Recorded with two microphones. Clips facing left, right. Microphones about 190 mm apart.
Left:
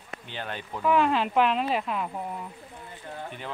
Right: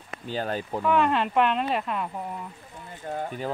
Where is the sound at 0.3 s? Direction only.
40° right (ahead or behind).